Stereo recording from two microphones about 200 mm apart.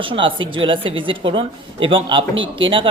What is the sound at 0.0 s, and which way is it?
Speech, 25° right (ahead or behind).